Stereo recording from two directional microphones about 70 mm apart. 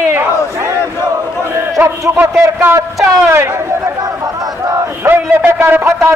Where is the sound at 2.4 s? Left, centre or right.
Right.